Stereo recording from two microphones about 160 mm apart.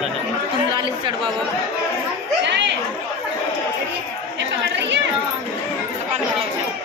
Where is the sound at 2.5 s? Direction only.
90° right.